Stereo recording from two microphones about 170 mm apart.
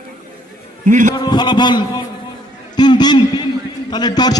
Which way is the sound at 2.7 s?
25° left (ahead or behind).